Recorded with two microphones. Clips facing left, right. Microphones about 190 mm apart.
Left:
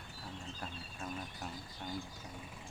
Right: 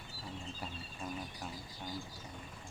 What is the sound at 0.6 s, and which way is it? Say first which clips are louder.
Speech: even; 5° right (ahead or behind).